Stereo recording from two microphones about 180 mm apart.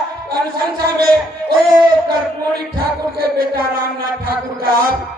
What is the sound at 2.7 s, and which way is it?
Speech, 55° right (ahead or behind).